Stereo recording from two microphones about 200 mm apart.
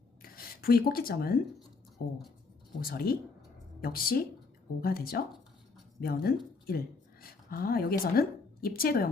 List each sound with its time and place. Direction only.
0.2 s rub: 45° left (ahead or behind)
2.8 s a woman's voice: 50° left (ahead or behind)